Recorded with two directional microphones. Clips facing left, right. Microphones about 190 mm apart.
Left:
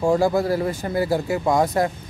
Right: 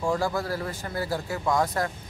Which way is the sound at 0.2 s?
15° left (ahead or behind).